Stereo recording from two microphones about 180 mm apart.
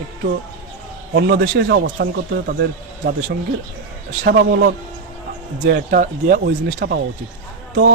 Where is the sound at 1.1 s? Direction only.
60° right (ahead or behind).